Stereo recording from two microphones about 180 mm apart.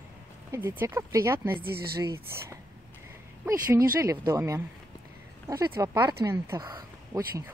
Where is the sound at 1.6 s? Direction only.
60° right (ahead or behind).